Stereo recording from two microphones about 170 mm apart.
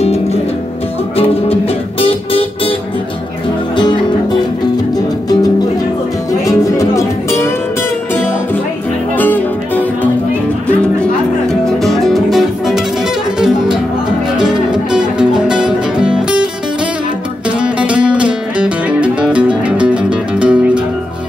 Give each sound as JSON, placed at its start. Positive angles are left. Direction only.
{"t": 1.1, "sound": "music", "side_deg": 35}
{"t": 3.7, "sound": "music", "side_deg": 25}
{"t": 9.1, "sound": "music", "side_deg": 10}
{"t": 14.3, "sound": "music", "side_deg": -5}
{"t": 17.5, "sound": "music", "side_deg": -5}